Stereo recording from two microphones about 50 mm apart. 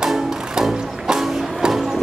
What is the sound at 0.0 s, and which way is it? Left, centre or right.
Music, centre.